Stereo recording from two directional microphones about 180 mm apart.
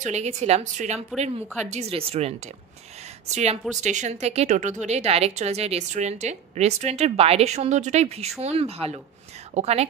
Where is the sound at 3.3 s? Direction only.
40° right (ahead or behind).